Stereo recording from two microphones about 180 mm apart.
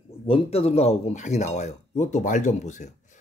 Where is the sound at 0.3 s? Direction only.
35° left (ahead or behind).